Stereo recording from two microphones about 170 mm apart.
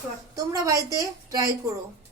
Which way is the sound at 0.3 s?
20° right (ahead or behind).